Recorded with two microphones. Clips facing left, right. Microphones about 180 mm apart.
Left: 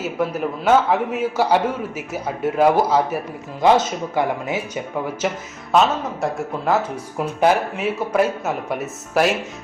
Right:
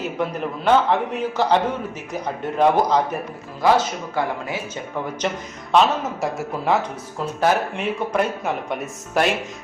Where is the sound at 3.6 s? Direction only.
20° left (ahead or behind).